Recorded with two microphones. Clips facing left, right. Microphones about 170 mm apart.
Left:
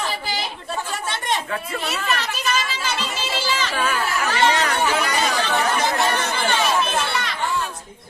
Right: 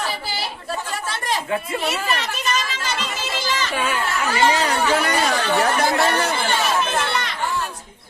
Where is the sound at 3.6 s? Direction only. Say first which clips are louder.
Even; 15° right (ahead or behind).